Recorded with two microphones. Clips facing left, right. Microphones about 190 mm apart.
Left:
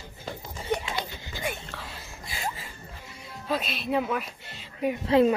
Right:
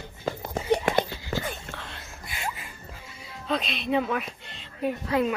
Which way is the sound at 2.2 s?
30° left (ahead or behind).